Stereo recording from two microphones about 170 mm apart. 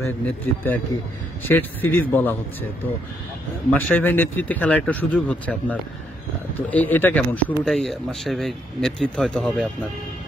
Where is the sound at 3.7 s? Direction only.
10° left (ahead or behind).